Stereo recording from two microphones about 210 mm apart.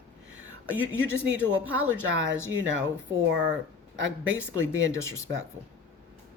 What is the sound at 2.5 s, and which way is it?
Speech, 65° right (ahead or behind).